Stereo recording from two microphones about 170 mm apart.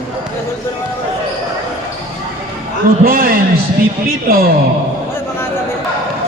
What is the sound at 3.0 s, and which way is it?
A man's voice, 60° right (ahead or behind).